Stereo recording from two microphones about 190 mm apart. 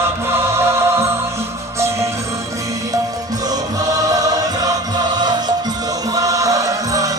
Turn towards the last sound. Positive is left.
turn(degrees=-20)  # may be behind; listen again after turning